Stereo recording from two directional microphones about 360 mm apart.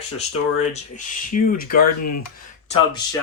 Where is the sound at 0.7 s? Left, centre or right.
Left.